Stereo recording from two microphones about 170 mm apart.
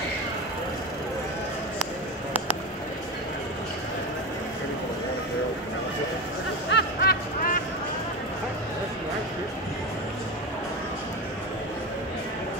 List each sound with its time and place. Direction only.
6.7 s music: 70° left (ahead or behind)